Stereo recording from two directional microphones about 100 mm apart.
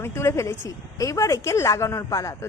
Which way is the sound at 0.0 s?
25° left (ahead or behind).